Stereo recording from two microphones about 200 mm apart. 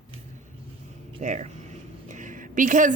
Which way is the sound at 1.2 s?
35° right (ahead or behind).